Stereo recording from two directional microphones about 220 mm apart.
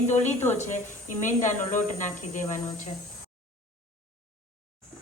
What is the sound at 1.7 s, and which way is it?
Speech, 35° left (ahead or behind).